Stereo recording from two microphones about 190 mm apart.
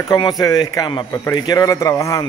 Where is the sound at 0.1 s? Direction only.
20° left (ahead or behind).